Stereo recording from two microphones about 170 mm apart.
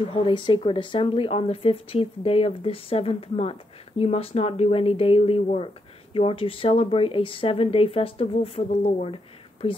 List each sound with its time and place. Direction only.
0.1 s speech: 30° left (ahead or behind)